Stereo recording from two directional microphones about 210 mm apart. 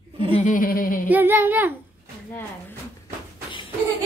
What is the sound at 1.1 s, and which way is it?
Female singing, 10° right (ahead or behind).